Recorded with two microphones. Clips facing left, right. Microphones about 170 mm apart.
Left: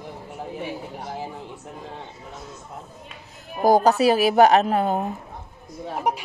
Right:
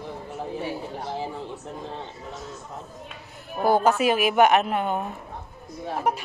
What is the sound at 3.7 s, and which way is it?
A woman's voice, 40° left (ahead or behind).